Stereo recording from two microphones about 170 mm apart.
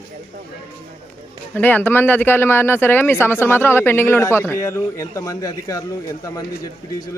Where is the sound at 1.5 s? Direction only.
10° left (ahead or behind).